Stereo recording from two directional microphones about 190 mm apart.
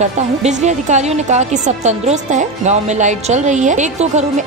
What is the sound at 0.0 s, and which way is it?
A woman's voice, 40° right (ahead or behind).